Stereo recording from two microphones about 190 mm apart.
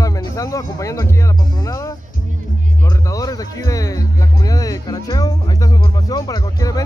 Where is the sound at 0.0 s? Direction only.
20° left (ahead or behind).